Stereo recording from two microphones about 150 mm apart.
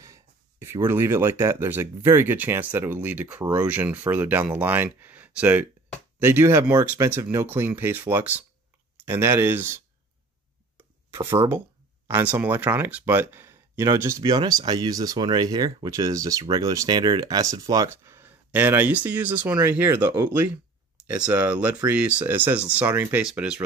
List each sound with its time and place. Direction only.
0.0 s speech: 20° right (ahead or behind)
11.1 s speech: 20° right (ahead or behind)